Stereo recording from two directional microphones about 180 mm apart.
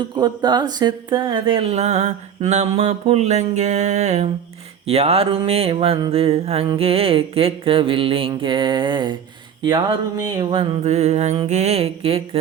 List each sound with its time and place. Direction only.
0.0 s speech: 25° right (ahead or behind)